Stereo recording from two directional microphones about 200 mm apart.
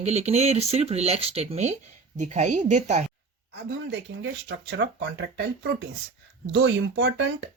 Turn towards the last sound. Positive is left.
turn(degrees=-65)  # may be behind; listen again after turning